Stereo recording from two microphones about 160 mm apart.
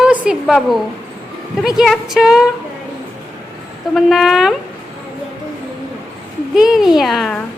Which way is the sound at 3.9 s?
Centre (ahead or behind).